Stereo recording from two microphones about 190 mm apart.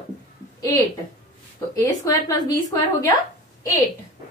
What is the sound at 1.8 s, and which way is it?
Speech, 20° left (ahead or behind).